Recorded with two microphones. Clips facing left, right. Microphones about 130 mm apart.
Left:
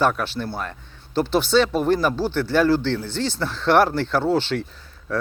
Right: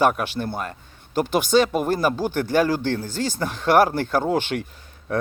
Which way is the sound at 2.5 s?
15° right (ahead or behind).